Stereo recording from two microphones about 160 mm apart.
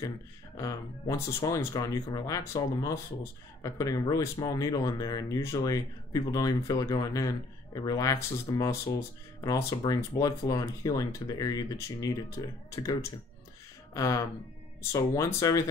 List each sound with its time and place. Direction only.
0.6 s speech: 20° left (ahead or behind)
13.9 s speech: 20° left (ahead or behind)